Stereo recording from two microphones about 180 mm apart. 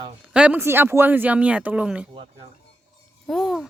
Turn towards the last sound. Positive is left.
turn(degrees=0)  # may be behind; listen again after turning